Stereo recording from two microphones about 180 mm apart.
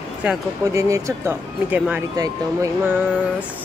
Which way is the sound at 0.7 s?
15° right (ahead or behind).